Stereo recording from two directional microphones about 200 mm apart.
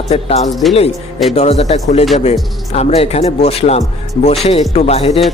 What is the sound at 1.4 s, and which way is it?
Speech, 30° left (ahead or behind).